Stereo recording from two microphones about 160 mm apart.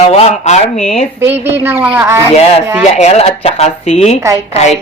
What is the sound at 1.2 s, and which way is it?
Speech, 15° right (ahead or behind).